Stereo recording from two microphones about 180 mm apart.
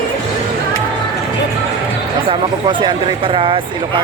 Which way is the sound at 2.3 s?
25° right (ahead or behind).